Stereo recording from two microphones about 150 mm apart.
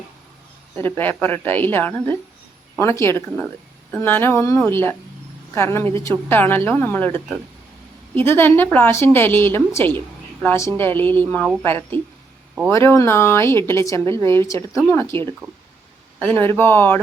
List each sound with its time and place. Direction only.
0.8 s a woman's voice: 15° left (ahead or behind)